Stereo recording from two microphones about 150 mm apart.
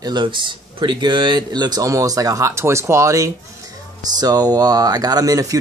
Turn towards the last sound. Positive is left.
turn(degrees=-25)  # may be behind; listen again after turning